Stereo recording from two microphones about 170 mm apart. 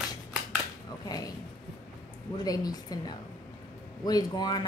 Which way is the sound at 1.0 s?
20° left (ahead or behind).